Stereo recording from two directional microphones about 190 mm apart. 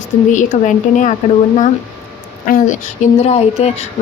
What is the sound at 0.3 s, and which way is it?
Speech, 40° left (ahead or behind).